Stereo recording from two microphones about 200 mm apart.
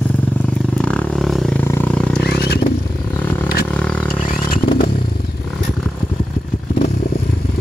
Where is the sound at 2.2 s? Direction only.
50° left (ahead or behind).